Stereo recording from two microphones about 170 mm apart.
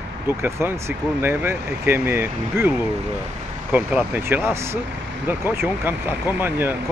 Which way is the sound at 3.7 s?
10° right (ahead or behind).